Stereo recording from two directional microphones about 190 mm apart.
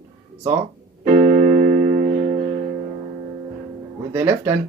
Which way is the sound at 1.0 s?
45° right (ahead or behind).